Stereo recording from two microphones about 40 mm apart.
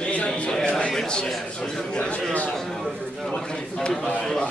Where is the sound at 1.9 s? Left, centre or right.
Left.